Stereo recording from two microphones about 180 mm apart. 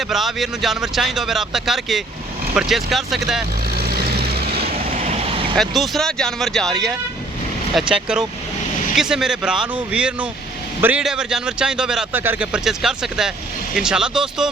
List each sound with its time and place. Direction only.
0.1 s speech: centre (ahead or behind)
3.8 s vehicle: 60° right (ahead or behind)
4.6 s vehicle: 35° right (ahead or behind)
5.5 s speech: centre (ahead or behind)